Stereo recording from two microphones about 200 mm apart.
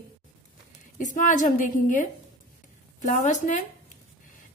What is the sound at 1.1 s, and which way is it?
A woman's voice, 40° left (ahead or behind).